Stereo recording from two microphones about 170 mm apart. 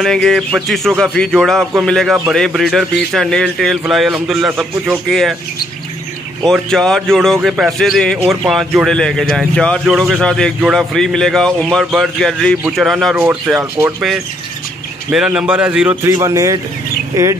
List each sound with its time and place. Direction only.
0.0 s a man's voice: centre (ahead or behind)
6.4 s a man's voice: centre (ahead or behind)
9.9 s a man's voice: 10° right (ahead or behind)
10.2 s a man's voice: 5° left (ahead or behind); by 13.9 s 15° right (ahead or behind)
15.0 s a man's voice: 5° right (ahead or behind)
16.0 s speech: 20° right (ahead or behind)